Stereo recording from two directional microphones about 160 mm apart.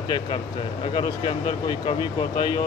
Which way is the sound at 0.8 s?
30° left (ahead or behind).